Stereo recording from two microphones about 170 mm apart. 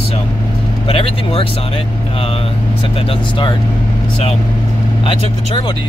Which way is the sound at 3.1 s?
30° left (ahead or behind).